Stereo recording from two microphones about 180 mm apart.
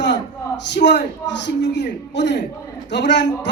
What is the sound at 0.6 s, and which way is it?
A man's voice, 75° left (ahead or behind).